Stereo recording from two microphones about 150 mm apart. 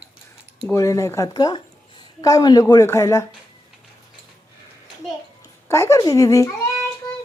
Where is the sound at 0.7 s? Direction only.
20° left (ahead or behind).